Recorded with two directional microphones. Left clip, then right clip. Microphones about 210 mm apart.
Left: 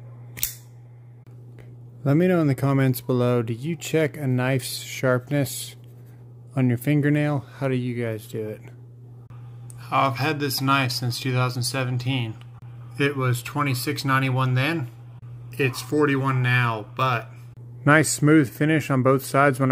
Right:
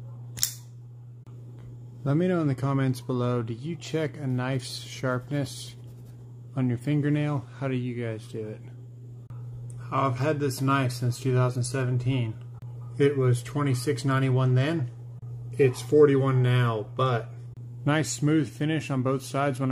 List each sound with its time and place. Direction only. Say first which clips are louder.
2.0 s speech: left 6 dB; 35° left (ahead or behind)
9.8 s speech: left 5 dB; 5° left (ahead or behind)
17.8 s speech: left 9 dB; 25° left (ahead or behind)